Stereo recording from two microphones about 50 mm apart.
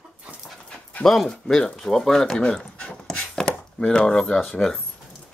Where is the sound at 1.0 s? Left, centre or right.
Centre.